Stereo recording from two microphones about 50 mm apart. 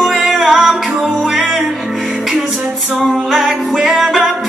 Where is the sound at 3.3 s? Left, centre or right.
Centre.